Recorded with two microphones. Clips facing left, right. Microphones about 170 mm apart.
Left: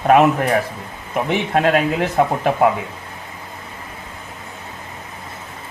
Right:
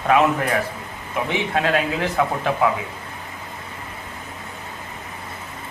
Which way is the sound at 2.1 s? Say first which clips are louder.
Left 4 dB; 45° left (ahead or behind).